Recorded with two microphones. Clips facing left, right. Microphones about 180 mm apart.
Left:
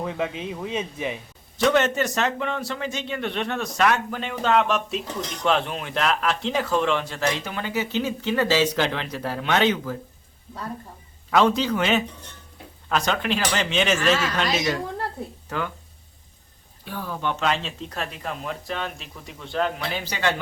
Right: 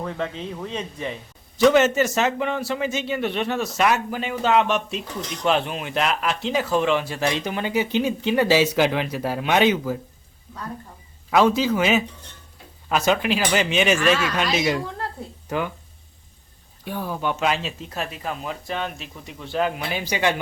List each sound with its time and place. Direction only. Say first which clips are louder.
0.0 s a man's voice: left 1 dB; 10° left (ahead or behind)
1.5 s a man's voice: right 4 dB; 5° right (ahead or behind)
11.3 s a man's voice: right 2 dB; 5° right (ahead or behind)
16.8 s speech: right 2 dB; 15° right (ahead or behind)